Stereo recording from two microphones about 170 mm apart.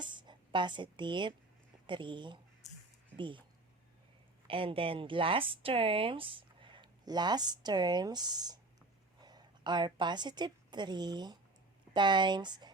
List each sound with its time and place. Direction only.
0.0 s speech: 25° right (ahead or behind)
4.4 s a woman's voice: 30° right (ahead or behind)